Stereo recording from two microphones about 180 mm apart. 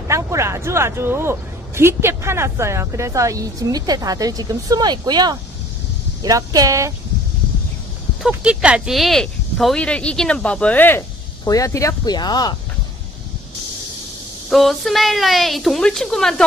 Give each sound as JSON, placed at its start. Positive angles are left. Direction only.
{"t": 0.1, "sound": "speech", "side_deg": -15}
{"t": 8.2, "sound": "speech", "side_deg": -5}
{"t": 14.5, "sound": "a woman's voice", "side_deg": 0}